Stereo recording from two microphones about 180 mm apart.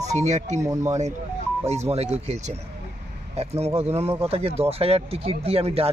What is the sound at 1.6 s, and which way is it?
Speech, 35° right (ahead or behind).